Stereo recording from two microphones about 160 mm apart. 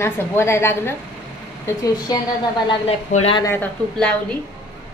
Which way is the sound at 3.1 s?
40° left (ahead or behind).